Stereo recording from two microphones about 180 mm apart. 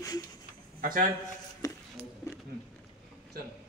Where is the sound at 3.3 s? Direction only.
55° right (ahead or behind).